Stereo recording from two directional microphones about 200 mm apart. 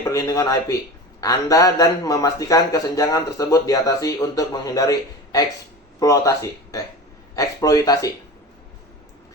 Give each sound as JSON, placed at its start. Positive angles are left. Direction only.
{"t": 0.0, "sound": "a man's voice", "side_deg": 15}